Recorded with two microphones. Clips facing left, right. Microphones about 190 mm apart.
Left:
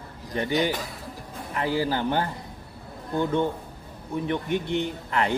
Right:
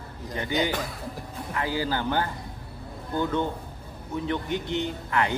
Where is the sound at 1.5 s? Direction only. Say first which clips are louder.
Left 3 dB; 25° left (ahead or behind).